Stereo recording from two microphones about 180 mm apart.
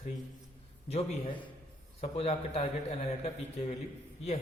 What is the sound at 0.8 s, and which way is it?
A man's voice, 35° left (ahead or behind).